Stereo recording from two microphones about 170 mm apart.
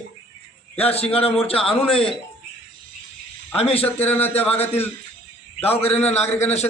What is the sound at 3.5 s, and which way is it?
Speech, 35° left (ahead or behind).